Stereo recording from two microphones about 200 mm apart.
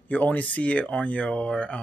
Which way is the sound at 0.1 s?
10° left (ahead or behind).